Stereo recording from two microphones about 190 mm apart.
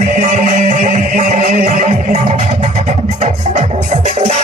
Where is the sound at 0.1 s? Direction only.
40° right (ahead or behind).